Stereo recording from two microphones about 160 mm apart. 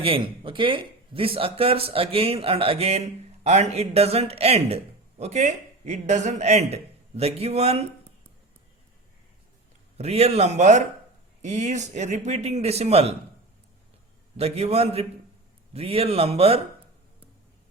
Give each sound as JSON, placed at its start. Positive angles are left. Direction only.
{"t": 0.0, "sound": "speech", "side_deg": -35}
{"t": 10.0, "sound": "a man's voice", "side_deg": -40}
{"t": 14.3, "sound": "speech", "side_deg": -40}